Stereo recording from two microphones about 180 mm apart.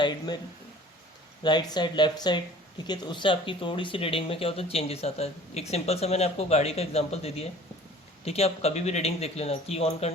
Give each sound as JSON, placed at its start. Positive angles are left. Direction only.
{"t": 1.5, "sound": "speech", "side_deg": 25}